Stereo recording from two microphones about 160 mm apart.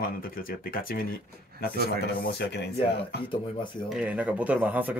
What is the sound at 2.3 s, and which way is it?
Speech, 90° left.